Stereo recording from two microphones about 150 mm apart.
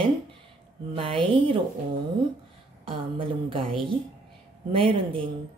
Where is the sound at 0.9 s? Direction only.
35° right (ahead or behind).